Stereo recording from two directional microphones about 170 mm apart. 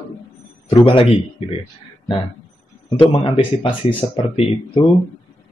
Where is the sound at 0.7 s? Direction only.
30° left (ahead or behind).